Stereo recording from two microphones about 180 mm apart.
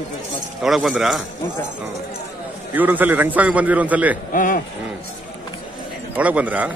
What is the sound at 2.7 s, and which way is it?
A man's voice, 10° right (ahead or behind).